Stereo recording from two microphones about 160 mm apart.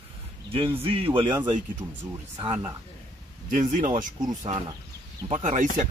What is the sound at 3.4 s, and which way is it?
Speech, 50° right (ahead or behind).